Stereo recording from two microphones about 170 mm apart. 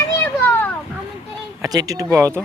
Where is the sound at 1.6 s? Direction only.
20° right (ahead or behind).